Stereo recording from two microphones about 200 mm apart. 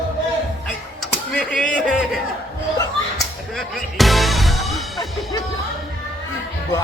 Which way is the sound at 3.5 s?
Centre (ahead or behind).